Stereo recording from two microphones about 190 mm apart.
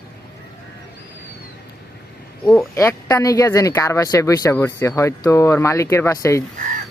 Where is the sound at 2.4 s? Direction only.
10° left (ahead or behind).